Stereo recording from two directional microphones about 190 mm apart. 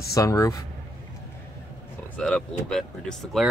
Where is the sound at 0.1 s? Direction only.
15° left (ahead or behind).